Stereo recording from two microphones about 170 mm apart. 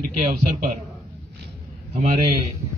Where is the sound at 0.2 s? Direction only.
45° right (ahead or behind).